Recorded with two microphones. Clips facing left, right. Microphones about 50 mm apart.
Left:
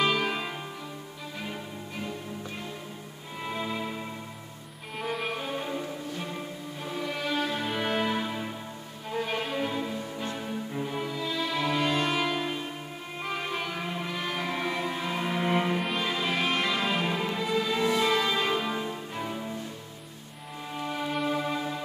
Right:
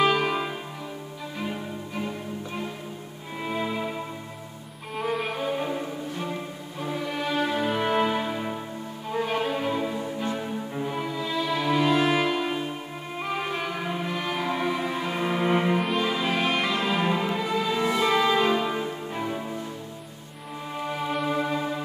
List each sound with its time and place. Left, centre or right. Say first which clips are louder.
0.0 s music: right 4 dB; centre
3.4 s music: right 4 dB; centre
4.9 s music: right 4 dB; centre
5.4 s music: right 5 dB; centre
6.8 s music: right 4 dB; centre
9.1 s violin: right 4 dB; centre
10.2 s music: right 4 dB; centre
20.8 s music: right 2 dB; centre